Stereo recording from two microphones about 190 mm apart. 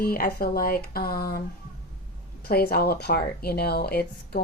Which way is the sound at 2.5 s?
55° left (ahead or behind).